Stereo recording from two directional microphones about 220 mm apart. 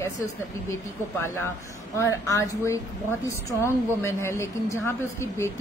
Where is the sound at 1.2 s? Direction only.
10° left (ahead or behind).